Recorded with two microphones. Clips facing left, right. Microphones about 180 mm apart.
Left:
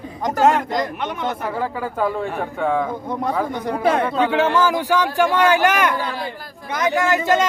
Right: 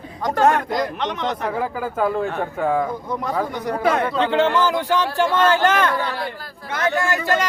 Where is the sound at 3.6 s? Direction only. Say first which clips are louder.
Left 1 dB; 30° left (ahead or behind).